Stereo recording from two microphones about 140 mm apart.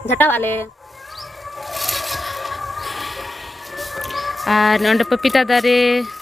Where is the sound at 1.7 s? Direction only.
Centre (ahead or behind).